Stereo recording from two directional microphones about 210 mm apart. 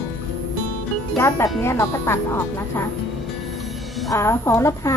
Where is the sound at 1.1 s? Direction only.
15° left (ahead or behind).